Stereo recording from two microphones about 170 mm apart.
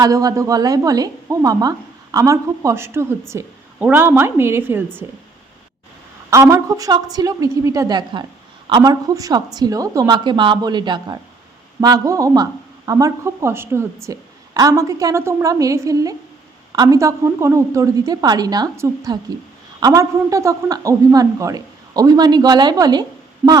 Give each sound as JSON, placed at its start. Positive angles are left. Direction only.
{"t": 0.0, "sound": "a woman's voice", "side_deg": -20}
{"t": 6.3, "sound": "speech", "side_deg": -20}
{"t": 23.4, "sound": "a woman's voice", "side_deg": -10}